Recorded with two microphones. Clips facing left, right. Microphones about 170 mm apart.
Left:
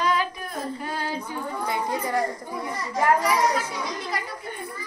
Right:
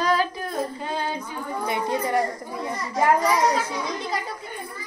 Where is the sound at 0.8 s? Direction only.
20° right (ahead or behind).